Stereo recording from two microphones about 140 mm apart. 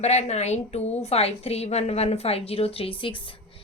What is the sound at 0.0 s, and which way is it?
A woman's voice, 50° left (ahead or behind).